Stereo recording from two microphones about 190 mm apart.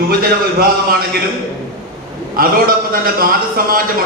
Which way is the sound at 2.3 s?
50° right (ahead or behind).